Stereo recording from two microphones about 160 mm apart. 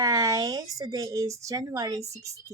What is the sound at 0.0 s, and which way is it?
Speech, 20° right (ahead or behind).